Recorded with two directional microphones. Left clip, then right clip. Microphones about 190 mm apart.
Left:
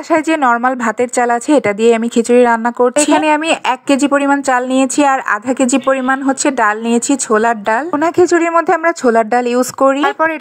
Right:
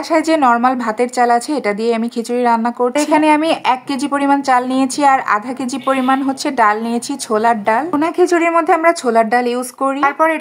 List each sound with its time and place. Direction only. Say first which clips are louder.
0.1 s a woman's voice: left 1 dB; 25° left (ahead or behind)